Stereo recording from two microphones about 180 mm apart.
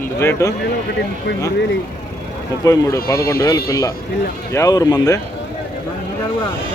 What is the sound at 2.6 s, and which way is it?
Speech, 20° left (ahead or behind).